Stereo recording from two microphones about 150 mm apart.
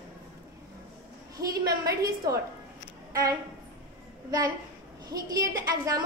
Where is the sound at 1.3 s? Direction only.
25° right (ahead or behind).